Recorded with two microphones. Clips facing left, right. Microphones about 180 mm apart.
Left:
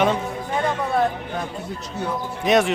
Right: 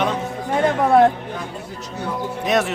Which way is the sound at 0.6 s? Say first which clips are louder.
Right 8 dB; 90° right.